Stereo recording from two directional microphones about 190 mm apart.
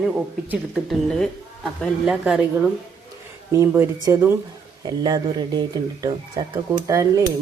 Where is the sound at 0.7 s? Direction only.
Centre (ahead or behind).